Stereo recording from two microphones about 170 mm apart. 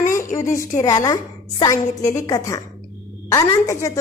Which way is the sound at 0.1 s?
20° left (ahead or behind).